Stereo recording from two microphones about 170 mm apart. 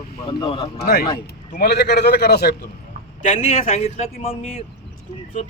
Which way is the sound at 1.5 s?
70° left (ahead or behind).